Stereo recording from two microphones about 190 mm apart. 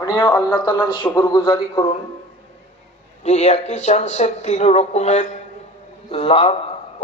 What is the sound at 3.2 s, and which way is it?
A man's voice, 35° left (ahead or behind).